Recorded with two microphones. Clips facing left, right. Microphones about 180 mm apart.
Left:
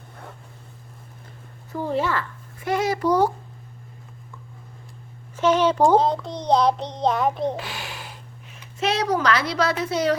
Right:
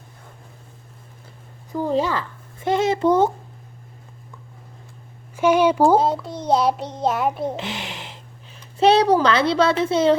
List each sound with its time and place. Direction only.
1.7 s speech: 15° right (ahead or behind)
5.4 s a child's voice: 10° right (ahead or behind)
7.5 s speech: 20° right (ahead or behind)